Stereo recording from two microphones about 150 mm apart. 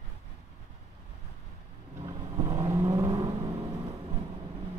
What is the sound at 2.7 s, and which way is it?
Vehicle, 20° right (ahead or behind).